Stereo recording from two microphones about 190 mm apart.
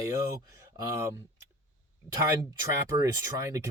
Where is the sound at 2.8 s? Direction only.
15° right (ahead or behind).